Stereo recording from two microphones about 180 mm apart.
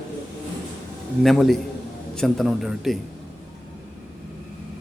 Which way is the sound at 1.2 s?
Centre (ahead or behind).